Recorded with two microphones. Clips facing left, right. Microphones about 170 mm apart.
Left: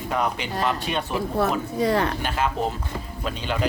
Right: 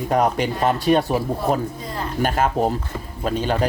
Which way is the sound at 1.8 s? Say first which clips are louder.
Left 8 dB; 75° left (ahead or behind).